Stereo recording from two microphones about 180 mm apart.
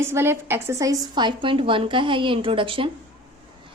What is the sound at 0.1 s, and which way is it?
A woman's voice, 15° right (ahead or behind).